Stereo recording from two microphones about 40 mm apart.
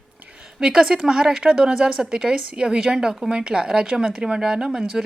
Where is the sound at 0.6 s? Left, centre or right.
Centre.